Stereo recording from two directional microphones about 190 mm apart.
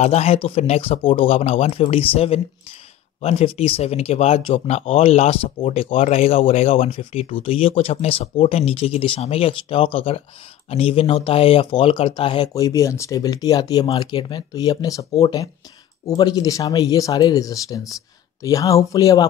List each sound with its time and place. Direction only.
0.0 s speech: 35° left (ahead or behind)
12.5 s speech: 15° left (ahead or behind)